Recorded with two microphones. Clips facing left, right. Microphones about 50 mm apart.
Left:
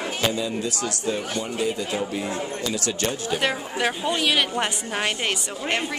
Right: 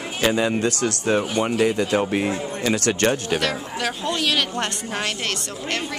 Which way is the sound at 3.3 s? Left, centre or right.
Centre.